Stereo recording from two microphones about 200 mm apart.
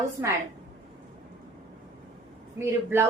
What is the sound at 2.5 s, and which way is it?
Speech, 10° right (ahead or behind).